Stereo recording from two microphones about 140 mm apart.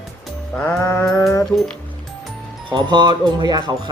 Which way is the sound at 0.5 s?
10° left (ahead or behind).